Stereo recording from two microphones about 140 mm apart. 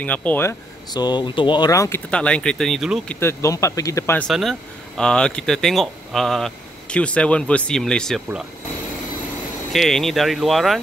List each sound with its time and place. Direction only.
0.0 s speech: 10° left (ahead or behind)
0.9 s speech: 30° left (ahead or behind)
2.0 s speech: 5° left (ahead or behind)
3.2 s speech: 20° left (ahead or behind)
4.3 s speech: centre (ahead or behind)
9.7 s speech: centre (ahead or behind)